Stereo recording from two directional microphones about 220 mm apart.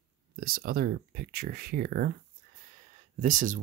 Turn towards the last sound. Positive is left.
turn(degrees=-35)  # may be behind; listen again after turning